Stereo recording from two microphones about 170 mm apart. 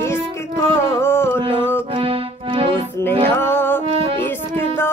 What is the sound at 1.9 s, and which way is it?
Music, 35° right (ahead or behind).